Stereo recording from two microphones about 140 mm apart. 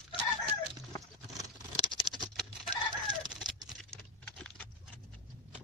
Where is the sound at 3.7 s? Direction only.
5° left (ahead or behind).